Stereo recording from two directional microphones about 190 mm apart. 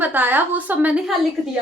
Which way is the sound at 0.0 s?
10° right (ahead or behind).